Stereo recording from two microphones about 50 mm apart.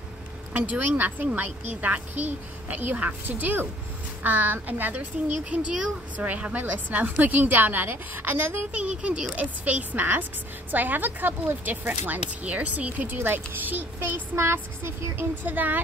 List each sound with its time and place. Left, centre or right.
0.5 s a woman's voice: right
5.4 s a woman's voice: right
14.3 s a sound: right
15.4 s a woman's voice: right